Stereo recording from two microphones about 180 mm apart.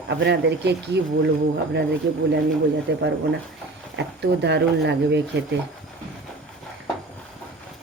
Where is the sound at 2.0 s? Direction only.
75° right (ahead or behind).